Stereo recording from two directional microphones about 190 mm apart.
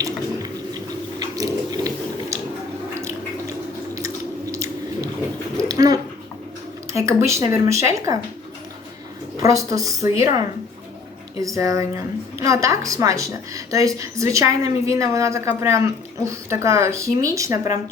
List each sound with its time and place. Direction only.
1.2 s biting: 20° right (ahead or behind)
4.5 s chewing: 15° right (ahead or behind)
5.6 s a sound: 20° right (ahead or behind)
6.9 s a woman's voice: 15° right (ahead or behind)
9.4 s a woman's voice: 15° right (ahead or behind)
11.4 s a woman's voice: 15° right (ahead or behind)